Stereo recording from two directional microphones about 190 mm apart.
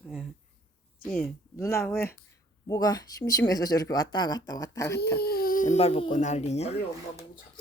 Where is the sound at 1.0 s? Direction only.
10° left (ahead or behind).